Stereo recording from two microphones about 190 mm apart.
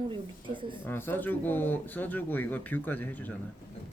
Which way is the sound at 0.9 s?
10° left (ahead or behind).